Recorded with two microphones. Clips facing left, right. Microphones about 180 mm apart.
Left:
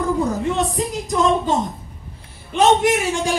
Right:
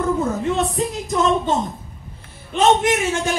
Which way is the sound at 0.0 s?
Centre (ahead or behind).